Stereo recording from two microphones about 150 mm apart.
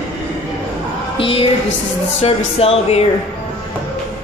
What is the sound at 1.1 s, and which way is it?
Music, 40° left (ahead or behind).